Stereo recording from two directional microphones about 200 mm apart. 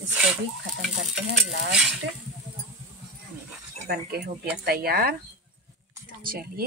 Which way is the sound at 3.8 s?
55° right (ahead or behind).